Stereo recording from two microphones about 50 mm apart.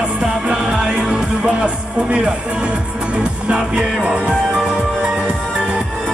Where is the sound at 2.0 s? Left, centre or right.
Right.